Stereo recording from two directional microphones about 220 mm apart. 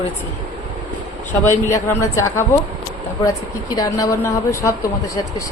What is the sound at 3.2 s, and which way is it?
A woman's voice, 15° left (ahead or behind).